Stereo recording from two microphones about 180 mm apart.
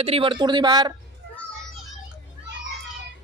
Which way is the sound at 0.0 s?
30° right (ahead or behind).